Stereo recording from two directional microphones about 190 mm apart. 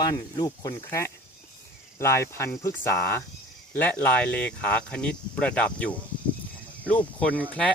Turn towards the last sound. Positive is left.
turn(degrees=10)  # may be behind; listen again after turning